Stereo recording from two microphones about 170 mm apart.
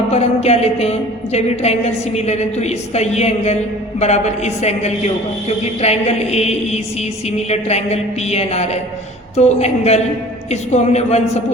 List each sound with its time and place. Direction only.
0.1 s a woman's voice: 40° left (ahead or behind)